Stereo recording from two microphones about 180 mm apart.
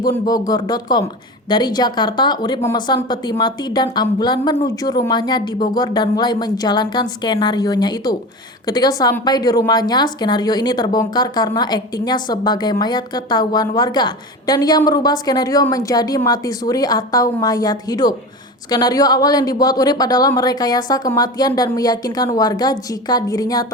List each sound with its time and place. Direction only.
0.0 s a woman's voice: 20° left (ahead or behind)